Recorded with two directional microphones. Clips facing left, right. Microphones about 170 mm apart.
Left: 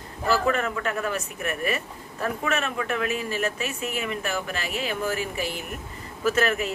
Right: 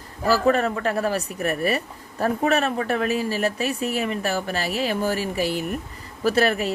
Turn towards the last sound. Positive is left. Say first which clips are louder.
# right 3 dB
turn(degrees=-35)  # may be behind; listen again after turning